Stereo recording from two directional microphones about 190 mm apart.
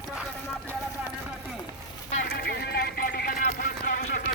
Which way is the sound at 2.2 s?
60° left (ahead or behind).